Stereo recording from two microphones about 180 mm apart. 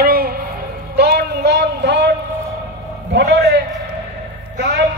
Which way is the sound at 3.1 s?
65° right (ahead or behind).